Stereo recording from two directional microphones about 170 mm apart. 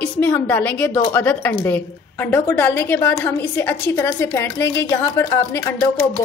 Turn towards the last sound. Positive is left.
turn(degrees=15)  # may be behind; listen again after turning